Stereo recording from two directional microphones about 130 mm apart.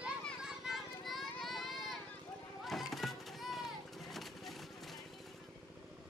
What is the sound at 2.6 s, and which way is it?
Children playing, centre (ahead or behind).